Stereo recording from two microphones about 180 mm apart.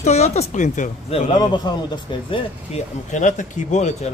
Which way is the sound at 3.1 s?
45° left (ahead or behind).